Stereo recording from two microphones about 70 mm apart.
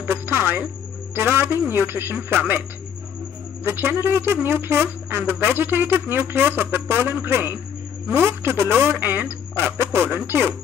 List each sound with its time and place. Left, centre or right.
0.0 s music: right
1.1 s speech: right
3.6 s speech: right